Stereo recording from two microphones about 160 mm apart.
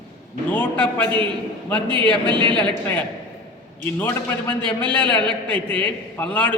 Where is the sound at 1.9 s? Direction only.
30° right (ahead or behind).